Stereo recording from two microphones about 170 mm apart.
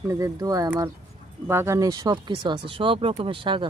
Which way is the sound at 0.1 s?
20° right (ahead or behind).